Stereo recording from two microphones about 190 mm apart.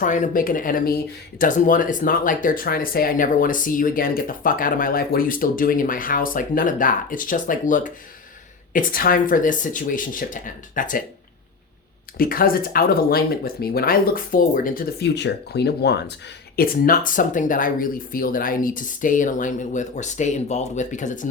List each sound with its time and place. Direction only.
0.0 s speech: 40° left (ahead or behind)
12.1 s speech: 50° left (ahead or behind)
16.6 s speech: 50° left (ahead or behind)